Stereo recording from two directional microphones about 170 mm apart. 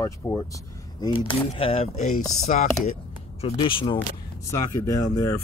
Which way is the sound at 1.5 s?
35° left (ahead or behind).